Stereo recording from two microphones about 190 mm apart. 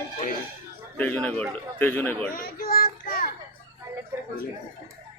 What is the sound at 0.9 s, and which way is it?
A man's voice, 10° left (ahead or behind).